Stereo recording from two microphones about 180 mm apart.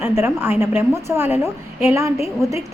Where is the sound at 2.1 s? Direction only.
35° left (ahead or behind).